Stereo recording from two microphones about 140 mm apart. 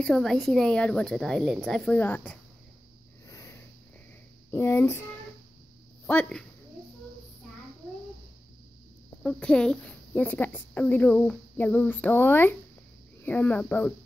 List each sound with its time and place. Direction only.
0.0 s a woman's voice: 5° left (ahead or behind)
4.5 s speech: 15° left (ahead or behind)
6.0 s speech: 10° left (ahead or behind)
9.2 s speech: 5° left (ahead or behind)